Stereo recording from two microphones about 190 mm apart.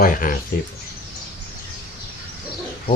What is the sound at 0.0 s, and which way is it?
Speech, 45° left (ahead or behind).